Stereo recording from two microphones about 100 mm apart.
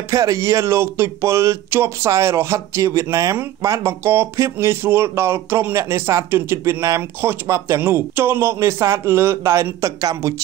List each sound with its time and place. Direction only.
0.1 s speech: 35° right (ahead or behind)